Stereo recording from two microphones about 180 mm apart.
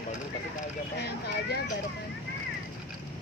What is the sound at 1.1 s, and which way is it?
Speech, 65° left (ahead or behind).